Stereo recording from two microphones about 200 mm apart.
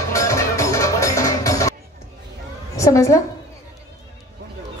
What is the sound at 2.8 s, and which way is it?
Speech, 15° left (ahead or behind).